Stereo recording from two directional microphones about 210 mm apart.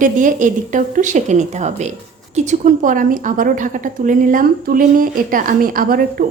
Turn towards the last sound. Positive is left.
turn(degrees=-45)  # may be behind; listen again after turning